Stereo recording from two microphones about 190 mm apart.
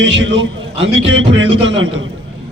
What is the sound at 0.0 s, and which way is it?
A man's voice, 75° right (ahead or behind).